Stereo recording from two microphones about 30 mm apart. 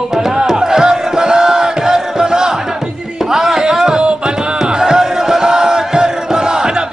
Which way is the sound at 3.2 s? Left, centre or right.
Centre.